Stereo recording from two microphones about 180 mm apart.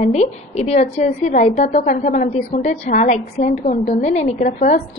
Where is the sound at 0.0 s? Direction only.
40° left (ahead or behind).